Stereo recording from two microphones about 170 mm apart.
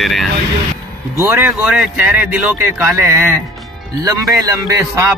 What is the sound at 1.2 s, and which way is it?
Speech, 15° right (ahead or behind).